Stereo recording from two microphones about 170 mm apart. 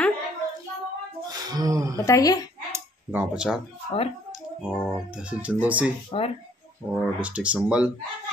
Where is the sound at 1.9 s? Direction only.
15° left (ahead or behind).